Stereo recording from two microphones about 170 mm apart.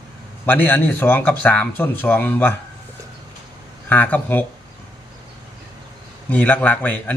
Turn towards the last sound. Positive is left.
turn(degrees=10)  # may be behind; listen again after turning